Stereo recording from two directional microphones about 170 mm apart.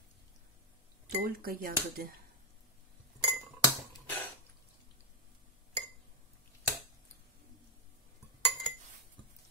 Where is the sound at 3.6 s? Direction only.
10° left (ahead or behind).